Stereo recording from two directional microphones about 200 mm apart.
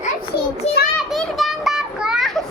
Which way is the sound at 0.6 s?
30° left (ahead or behind).